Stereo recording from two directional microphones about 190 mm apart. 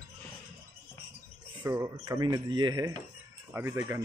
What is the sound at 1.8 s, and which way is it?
Speech, 20° right (ahead or behind).